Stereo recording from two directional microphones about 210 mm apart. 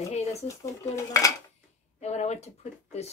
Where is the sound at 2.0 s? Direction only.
30° left (ahead or behind).